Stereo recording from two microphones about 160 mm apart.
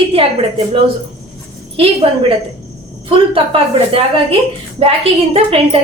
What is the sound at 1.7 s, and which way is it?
Speech, 35° right (ahead or behind).